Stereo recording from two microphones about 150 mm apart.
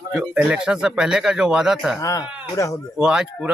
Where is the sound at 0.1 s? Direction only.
5° right (ahead or behind).